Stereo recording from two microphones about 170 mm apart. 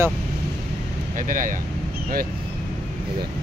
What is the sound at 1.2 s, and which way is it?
Speech, 50° right (ahead or behind).